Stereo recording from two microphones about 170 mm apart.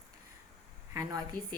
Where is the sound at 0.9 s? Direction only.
20° right (ahead or behind).